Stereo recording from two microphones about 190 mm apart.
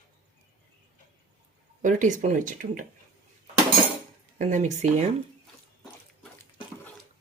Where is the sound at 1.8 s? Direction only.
40° right (ahead or behind).